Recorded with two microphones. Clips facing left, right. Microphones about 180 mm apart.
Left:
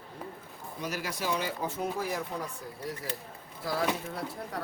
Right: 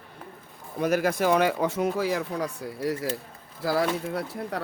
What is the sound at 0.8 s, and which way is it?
Speech, 55° right (ahead or behind).